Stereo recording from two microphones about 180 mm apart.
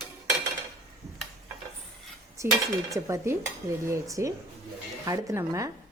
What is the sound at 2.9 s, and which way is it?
Speech, 15° right (ahead or behind).